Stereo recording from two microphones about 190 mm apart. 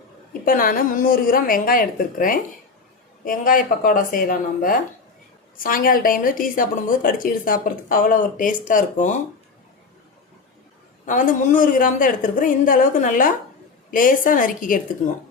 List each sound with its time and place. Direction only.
0.4 s a woman's voice: 45° left (ahead or behind)
11.0 s a woman's voice: 45° left (ahead or behind)